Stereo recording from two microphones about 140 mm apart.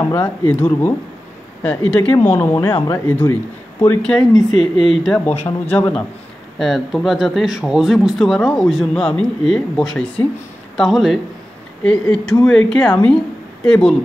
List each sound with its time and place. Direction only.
0.0 s a woman's voice: 15° left (ahead or behind)